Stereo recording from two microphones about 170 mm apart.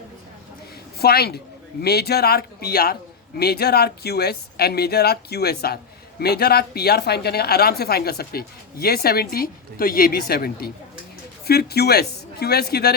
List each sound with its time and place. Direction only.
0.9 s a woman's voice: 65° left (ahead or behind)